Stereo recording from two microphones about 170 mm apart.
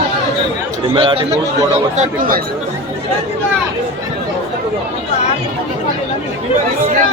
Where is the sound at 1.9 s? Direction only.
50° right (ahead or behind).